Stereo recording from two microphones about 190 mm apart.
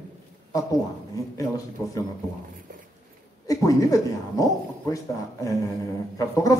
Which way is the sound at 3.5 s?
20° left (ahead or behind).